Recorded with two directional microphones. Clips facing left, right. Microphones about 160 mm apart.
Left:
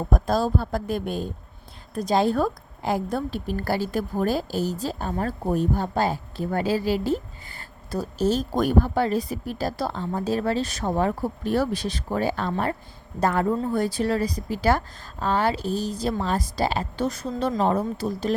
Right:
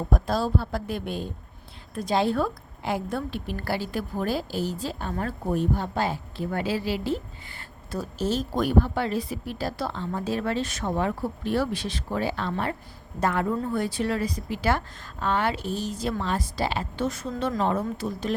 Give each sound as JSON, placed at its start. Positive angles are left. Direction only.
{"t": 0.1, "sound": "a woman's voice", "side_deg": 45}